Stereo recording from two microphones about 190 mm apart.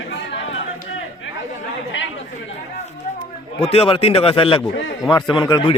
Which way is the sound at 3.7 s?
30° left (ahead or behind).